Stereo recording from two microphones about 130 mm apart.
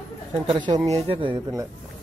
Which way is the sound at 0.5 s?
40° right (ahead or behind).